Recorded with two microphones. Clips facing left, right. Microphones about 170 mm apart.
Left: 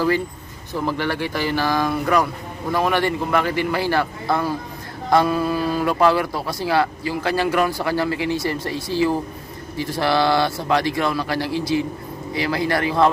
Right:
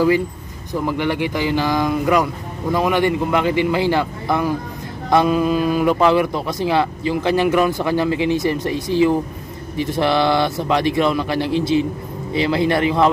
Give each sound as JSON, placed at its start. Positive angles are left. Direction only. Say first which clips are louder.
{"t": 0.8, "sound": "speech", "louder": "right 3 dB", "side_deg": -15}